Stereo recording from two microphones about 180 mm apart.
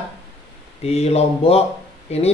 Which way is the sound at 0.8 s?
35° left (ahead or behind).